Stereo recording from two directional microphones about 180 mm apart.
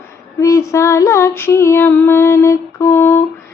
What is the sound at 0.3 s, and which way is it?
Female singing, 15° left (ahead or behind).